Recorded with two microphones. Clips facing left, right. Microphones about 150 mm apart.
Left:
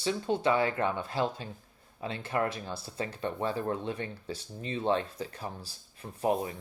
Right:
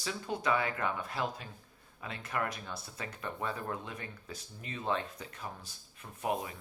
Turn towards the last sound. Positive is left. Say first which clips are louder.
# left 6 dB
turn(degrees=35)  # may be behind; listen again after turning